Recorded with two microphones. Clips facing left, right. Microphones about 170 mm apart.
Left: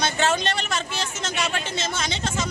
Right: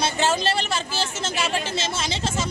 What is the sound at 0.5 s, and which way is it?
Speech, 30° right (ahead or behind).